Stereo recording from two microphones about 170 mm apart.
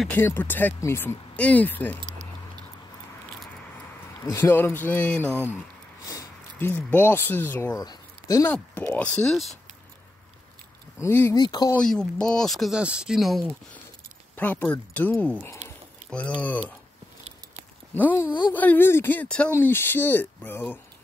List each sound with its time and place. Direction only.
0.1 s speech: 10° left (ahead or behind)
4.2 s speech: 15° left (ahead or behind)
11.0 s speech: 15° left (ahead or behind)
11.7 s speech: 5° left (ahead or behind)
17.9 s speech: 15° left (ahead or behind)